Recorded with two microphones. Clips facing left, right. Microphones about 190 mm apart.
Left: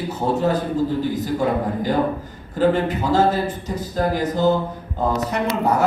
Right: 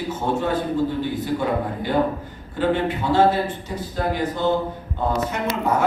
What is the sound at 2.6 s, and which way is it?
A man's voice, 40° left (ahead or behind).